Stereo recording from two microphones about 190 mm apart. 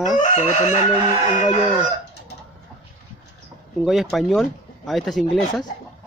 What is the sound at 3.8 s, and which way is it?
Speech, centre (ahead or behind).